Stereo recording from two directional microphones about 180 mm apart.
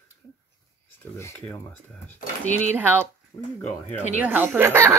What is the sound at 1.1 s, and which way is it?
Speech, 10° left (ahead or behind).